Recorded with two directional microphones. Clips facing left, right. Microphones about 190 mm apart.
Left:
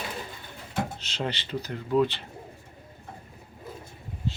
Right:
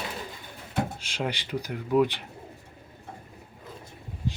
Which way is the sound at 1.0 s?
10° right (ahead or behind).